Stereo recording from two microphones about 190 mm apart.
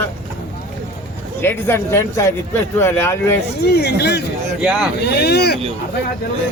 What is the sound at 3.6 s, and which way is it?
Speech, 60° left (ahead or behind).